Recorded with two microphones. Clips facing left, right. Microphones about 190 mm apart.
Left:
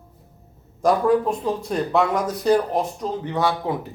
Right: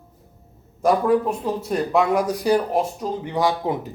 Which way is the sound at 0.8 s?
5° right (ahead or behind).